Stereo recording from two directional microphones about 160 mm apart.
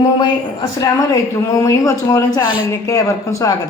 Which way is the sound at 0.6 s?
20° left (ahead or behind).